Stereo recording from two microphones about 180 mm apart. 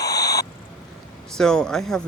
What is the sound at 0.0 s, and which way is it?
Owl, 20° left (ahead or behind).